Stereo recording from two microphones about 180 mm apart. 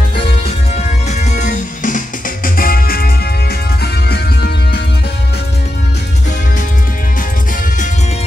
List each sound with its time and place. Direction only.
0.7 s music: 40° left (ahead or behind); by 4.8 s 65° left (ahead or behind)